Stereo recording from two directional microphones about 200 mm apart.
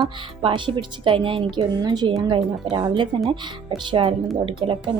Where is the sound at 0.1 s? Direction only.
25° right (ahead or behind).